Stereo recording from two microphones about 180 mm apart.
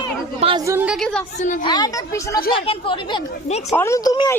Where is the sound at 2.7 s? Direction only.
30° left (ahead or behind).